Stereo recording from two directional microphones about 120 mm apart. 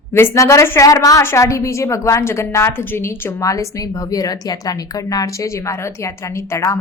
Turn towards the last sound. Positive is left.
turn(degrees=25)  # may be behind; listen again after turning